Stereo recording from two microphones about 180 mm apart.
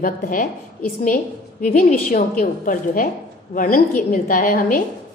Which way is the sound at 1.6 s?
45° left (ahead or behind).